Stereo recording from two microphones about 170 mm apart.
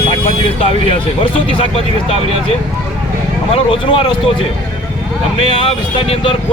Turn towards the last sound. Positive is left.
turn(degrees=35)  # may be behind; listen again after turning